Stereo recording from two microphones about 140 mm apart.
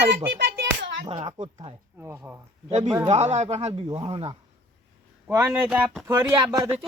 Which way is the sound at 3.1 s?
55° right (ahead or behind).